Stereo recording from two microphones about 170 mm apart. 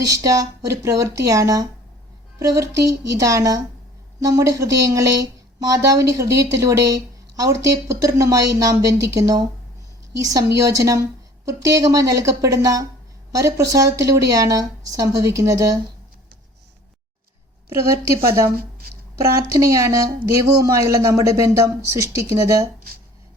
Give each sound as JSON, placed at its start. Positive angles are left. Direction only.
{"t": 0.1, "sound": "speech", "side_deg": -20}
{"t": 18.3, "sound": "a woman's voice", "side_deg": -15}